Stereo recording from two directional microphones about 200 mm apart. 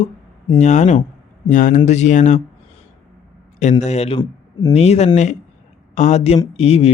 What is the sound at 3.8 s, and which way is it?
Speech, 35° left (ahead or behind).